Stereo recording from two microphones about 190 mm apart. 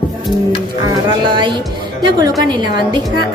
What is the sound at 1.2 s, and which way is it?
A woman's voice, 25° right (ahead or behind).